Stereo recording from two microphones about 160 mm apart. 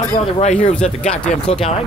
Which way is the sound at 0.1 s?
45° left (ahead or behind).